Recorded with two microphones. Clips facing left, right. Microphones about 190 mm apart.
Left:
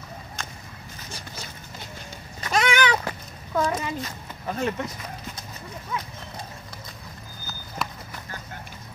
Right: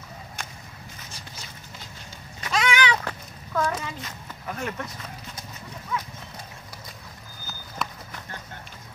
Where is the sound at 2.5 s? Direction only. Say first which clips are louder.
Left 2 dB; 45° left (ahead or behind).